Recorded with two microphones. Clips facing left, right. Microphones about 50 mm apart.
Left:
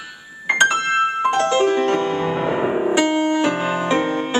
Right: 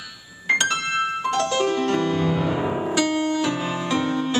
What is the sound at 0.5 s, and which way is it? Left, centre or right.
Music, left.